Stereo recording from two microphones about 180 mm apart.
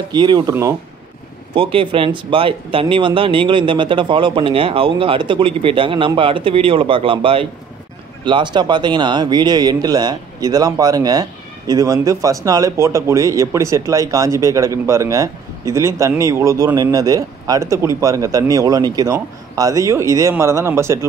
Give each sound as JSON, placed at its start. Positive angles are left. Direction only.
{"t": 0.1, "sound": "speech", "side_deg": -25}
{"t": 1.5, "sound": "speech", "side_deg": -30}